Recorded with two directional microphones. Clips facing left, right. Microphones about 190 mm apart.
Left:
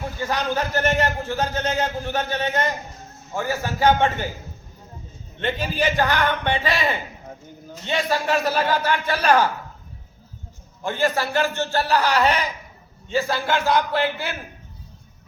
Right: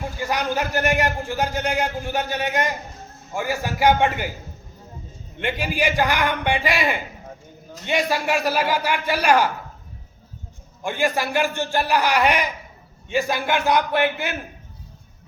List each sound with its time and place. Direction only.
0.2 s a man's voice: 10° right (ahead or behind)
5.4 s a man's voice: 10° right (ahead or behind)
10.8 s a man's voice: 15° right (ahead or behind)